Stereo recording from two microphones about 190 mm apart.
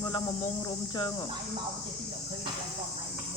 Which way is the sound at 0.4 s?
20° left (ahead or behind).